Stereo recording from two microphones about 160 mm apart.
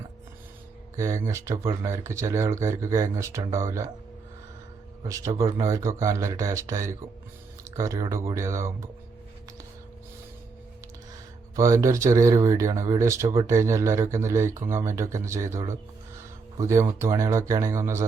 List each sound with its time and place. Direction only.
0.9 s speech: 20° right (ahead or behind)
5.0 s speech: 20° right (ahead or behind)
11.5 s speech: 20° right (ahead or behind)